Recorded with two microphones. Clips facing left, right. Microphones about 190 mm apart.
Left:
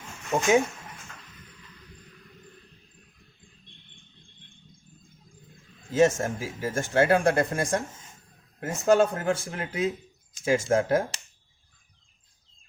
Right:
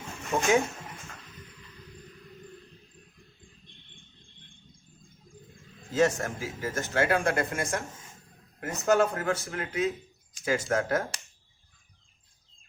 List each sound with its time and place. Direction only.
0.3 s speech: 25° left (ahead or behind)
6.0 s speech: 25° left (ahead or behind)